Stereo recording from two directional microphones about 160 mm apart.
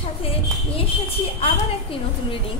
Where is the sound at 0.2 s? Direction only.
35° left (ahead or behind).